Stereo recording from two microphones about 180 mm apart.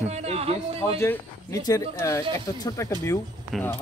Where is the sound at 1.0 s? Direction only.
15° left (ahead or behind).